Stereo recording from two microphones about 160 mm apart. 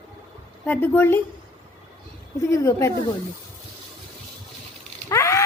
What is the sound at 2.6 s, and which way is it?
Speech, 20° left (ahead or behind).